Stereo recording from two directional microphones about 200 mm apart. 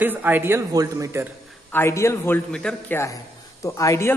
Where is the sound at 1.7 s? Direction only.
15° left (ahead or behind).